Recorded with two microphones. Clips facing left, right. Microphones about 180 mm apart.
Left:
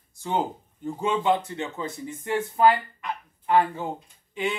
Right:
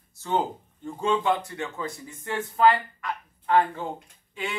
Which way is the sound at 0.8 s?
20° left (ahead or behind).